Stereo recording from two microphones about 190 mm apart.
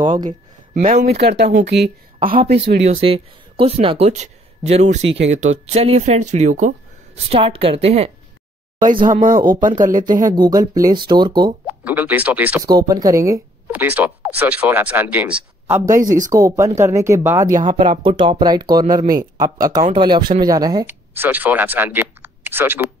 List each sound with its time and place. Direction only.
0.0 s speech: 25° right (ahead or behind)
0.7 s speech: 50° right (ahead or behind); by 1.9 s 65° right (ahead or behind)
2.8 s speech: 30° right (ahead or behind)
7.2 s speech: 30° right (ahead or behind)
8.7 s speech: 40° right (ahead or behind)
10.2 s speech: 20° right (ahead or behind)
11.6 s speech: 10° right (ahead or behind)
12.6 s speech: 20° right (ahead or behind)
16.0 s speech: 45° right (ahead or behind)
16.3 s speech: 15° right (ahead or behind)
17.7 s speech: 25° right (ahead or behind); by 22.8 s 10° right (ahead or behind)